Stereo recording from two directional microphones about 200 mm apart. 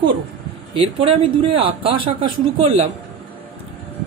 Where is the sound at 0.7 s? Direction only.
25° right (ahead or behind).